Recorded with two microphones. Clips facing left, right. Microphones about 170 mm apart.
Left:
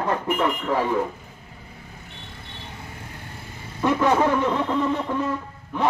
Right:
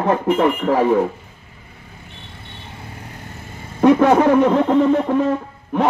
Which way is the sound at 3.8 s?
60° right (ahead or behind).